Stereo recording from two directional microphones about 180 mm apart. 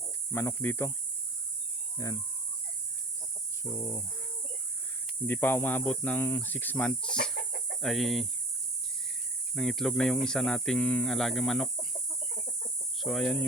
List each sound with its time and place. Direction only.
0.3 s speech: 15° left (ahead or behind)
2.0 s chicken: 20° left (ahead or behind)
3.6 s speech: 20° left (ahead or behind)
5.2 s speech: 10° left (ahead or behind)
7.1 s chicken: 5° left (ahead or behind)
7.8 s speech: centre (ahead or behind)
9.6 s speech: centre (ahead or behind)
13.0 s speech: centre (ahead or behind)